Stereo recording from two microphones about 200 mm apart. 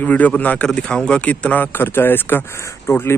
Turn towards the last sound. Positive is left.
turn(degrees=10)  # may be behind; listen again after turning